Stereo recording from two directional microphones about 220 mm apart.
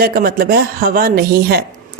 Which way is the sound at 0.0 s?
40° right (ahead or behind).